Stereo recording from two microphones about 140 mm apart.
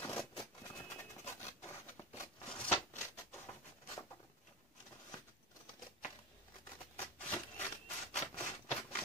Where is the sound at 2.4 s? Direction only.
5° left (ahead or behind).